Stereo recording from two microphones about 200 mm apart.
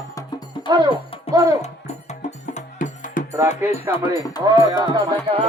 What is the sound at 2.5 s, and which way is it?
Music, 40° left (ahead or behind).